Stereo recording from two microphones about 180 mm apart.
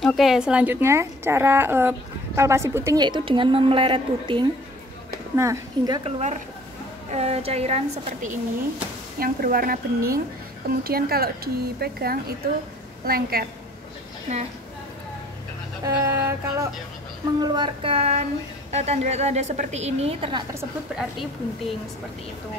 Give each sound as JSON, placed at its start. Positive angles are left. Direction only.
{"t": 0.0, "sound": "a woman's voice", "side_deg": 0}
{"t": 5.3, "sound": "speech", "side_deg": -15}
{"t": 6.0, "sound": "a woman's voice", "side_deg": -35}
{"t": 9.2, "sound": "a woman's voice", "side_deg": -55}
{"t": 15.8, "sound": "a woman's voice", "side_deg": -15}
{"t": 17.4, "sound": "a woman's voice", "side_deg": -25}
{"t": 20.9, "sound": "a woman's voice", "side_deg": -5}